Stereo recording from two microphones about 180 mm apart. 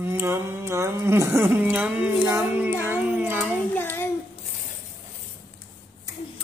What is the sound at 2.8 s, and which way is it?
Child singing, 10° right (ahead or behind).